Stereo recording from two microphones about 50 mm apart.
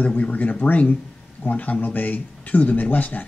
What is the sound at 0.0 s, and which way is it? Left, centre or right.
Speech, left.